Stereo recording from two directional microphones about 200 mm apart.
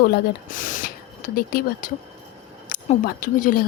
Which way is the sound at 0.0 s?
45° left (ahead or behind).